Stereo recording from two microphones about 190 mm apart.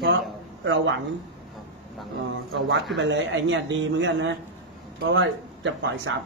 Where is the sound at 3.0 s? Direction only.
70° right (ahead or behind).